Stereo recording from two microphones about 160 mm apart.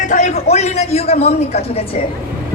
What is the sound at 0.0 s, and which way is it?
A man's voice, 50° left (ahead or behind).